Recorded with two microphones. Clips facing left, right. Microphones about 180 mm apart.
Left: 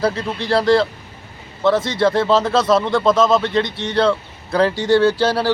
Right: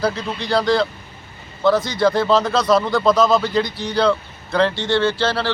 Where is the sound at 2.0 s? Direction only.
Centre (ahead or behind).